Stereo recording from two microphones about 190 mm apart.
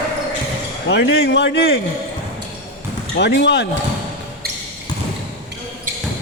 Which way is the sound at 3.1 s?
65° left (ahead or behind).